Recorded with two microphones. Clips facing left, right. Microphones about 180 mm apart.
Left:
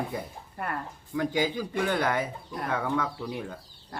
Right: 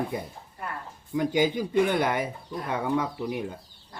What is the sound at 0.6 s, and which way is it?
Speech, 60° left (ahead or behind).